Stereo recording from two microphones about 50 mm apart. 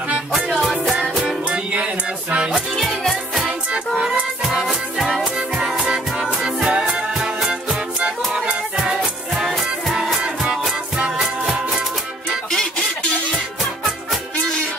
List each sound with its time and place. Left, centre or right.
0.3 s music: centre
1.2 s music: right
2.5 s music: centre
3.4 s music: centre
4.9 s music: centre
5.9 s music: centre